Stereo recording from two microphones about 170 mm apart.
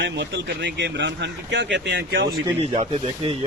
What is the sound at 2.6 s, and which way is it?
Speech, 40° right (ahead or behind).